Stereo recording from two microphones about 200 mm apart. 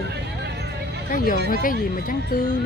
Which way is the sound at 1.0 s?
45° left (ahead or behind).